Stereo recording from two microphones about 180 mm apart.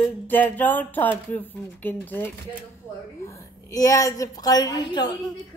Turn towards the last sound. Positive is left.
turn(degrees=25)  # may be behind; listen again after turning